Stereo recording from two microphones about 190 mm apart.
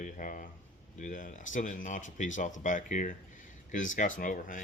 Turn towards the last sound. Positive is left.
turn(degrees=45)  # may be behind; listen again after turning